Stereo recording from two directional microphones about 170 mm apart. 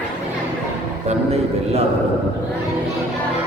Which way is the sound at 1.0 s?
35° right (ahead or behind).